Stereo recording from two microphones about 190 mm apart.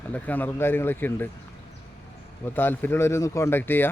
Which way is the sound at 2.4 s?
10° left (ahead or behind).